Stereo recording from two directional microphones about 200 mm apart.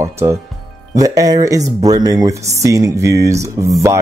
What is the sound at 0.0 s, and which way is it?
Speech, 15° right (ahead or behind).